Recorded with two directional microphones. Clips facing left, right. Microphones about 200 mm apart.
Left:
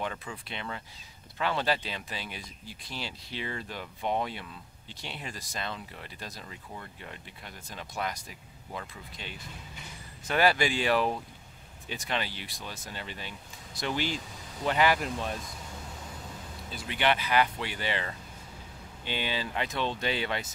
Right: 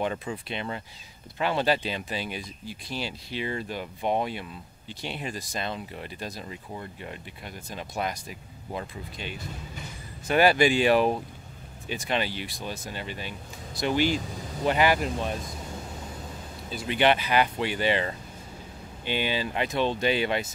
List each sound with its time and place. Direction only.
0.0 s speech: 25° right (ahead or behind)
16.8 s speech: 20° right (ahead or behind)